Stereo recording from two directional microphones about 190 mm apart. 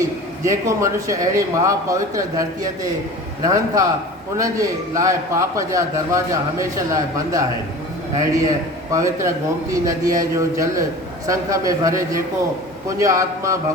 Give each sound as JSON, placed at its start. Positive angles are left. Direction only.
{"t": 0.4, "sound": "a man's voice", "side_deg": -15}